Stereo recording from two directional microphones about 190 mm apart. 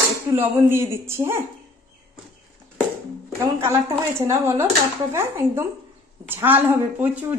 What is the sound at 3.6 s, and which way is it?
A woman's voice, 15° right (ahead or behind).